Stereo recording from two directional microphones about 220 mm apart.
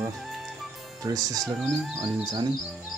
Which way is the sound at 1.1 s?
15° right (ahead or behind).